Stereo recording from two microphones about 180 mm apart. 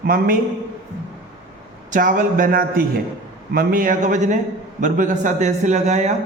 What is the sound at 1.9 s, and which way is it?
A man's voice, 50° right (ahead or behind).